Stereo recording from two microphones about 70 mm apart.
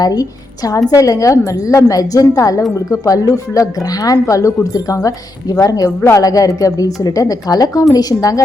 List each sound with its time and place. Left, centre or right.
0.0 s speech: left
0.9 s a woman's voice: left